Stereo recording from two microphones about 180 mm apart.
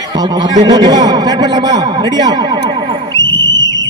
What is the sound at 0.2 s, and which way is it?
A man's voice, 25° right (ahead or behind).